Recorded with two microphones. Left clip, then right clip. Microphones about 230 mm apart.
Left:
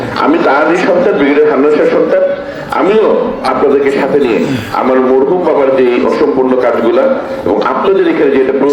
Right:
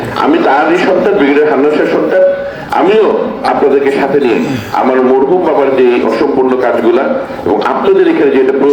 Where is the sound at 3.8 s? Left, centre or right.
Right.